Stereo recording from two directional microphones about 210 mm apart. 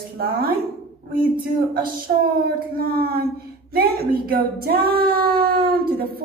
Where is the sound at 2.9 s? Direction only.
45° right (ahead or behind).